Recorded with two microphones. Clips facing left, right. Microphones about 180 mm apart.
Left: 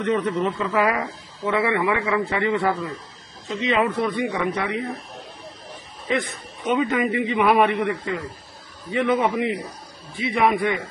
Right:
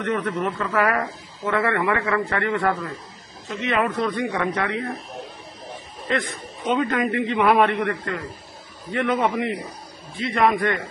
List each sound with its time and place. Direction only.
0.0 s speech: 20° left (ahead or behind)
6.6 s speech: 10° left (ahead or behind)